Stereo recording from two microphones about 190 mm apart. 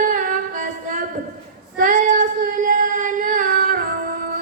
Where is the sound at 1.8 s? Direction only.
45° right (ahead or behind).